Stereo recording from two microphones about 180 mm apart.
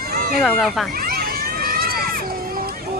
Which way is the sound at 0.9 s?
55° right (ahead or behind).